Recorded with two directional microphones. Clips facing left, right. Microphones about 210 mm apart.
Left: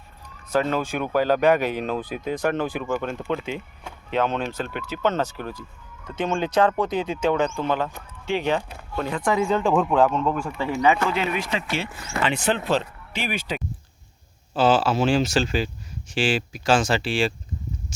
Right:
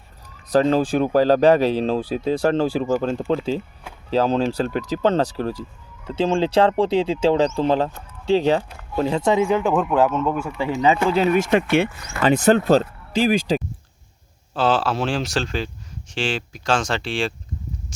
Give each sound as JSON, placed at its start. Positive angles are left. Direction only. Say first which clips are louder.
{"t": 0.4, "sound": "speech", "louder": "right 6 dB", "side_deg": -35}
{"t": 9.6, "sound": "speech", "louder": "right 1 dB", "side_deg": -5}
{"t": 10.7, "sound": "speech", "louder": "right 2 dB", "side_deg": -20}
{"t": 14.5, "sound": "speech", "louder": "left 1 dB", "side_deg": 0}